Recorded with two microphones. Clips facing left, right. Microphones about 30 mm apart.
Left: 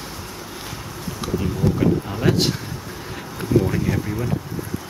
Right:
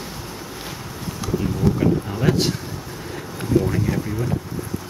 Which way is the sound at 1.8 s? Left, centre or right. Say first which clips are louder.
Left 2 dB; centre.